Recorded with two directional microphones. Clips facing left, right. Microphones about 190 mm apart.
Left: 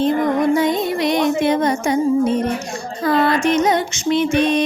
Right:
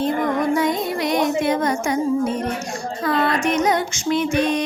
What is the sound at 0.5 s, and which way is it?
Music, 25° left (ahead or behind).